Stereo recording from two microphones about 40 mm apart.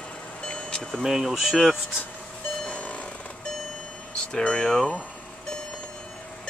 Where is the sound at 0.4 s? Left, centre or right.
Left.